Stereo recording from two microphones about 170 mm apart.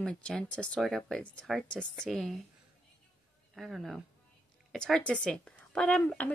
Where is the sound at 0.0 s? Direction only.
5° left (ahead or behind).